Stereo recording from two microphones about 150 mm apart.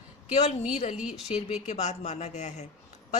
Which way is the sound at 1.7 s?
50° left (ahead or behind).